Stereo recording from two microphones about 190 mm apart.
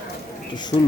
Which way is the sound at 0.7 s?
35° left (ahead or behind).